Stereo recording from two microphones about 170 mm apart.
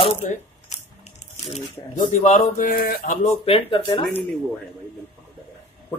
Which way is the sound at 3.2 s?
35° left (ahead or behind).